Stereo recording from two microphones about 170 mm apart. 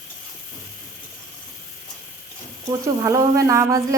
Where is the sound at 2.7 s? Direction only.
20° right (ahead or behind).